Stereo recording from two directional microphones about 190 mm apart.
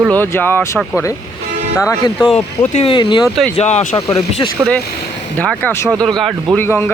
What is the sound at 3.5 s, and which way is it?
Speech, 35° left (ahead or behind).